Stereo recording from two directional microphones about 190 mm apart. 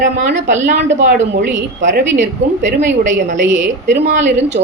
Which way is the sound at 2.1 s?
65° right (ahead or behind).